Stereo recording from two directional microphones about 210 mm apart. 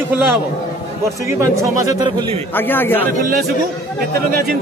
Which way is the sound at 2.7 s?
10° left (ahead or behind).